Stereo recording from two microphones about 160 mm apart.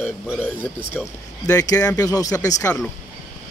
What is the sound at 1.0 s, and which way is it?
Speech, 10° left (ahead or behind).